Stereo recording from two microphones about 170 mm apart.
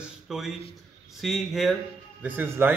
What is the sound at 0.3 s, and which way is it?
A man's voice, centre (ahead or behind).